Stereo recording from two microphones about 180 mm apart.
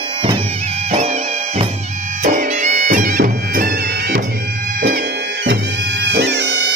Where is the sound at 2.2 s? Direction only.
45° right (ahead or behind).